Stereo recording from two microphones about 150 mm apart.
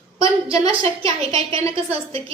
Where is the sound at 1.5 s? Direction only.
40° right (ahead or behind).